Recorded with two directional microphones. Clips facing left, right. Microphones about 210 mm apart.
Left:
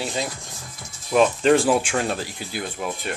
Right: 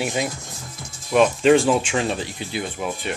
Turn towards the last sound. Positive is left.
turn(degrees=0)  # may be behind; listen again after turning